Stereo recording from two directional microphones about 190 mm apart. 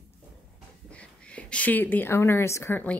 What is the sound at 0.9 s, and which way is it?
Speech, 5° left (ahead or behind).